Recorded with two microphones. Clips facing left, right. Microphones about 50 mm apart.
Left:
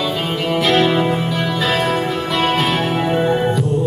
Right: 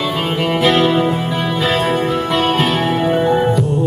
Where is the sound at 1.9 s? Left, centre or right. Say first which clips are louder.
Right 3 dB; right.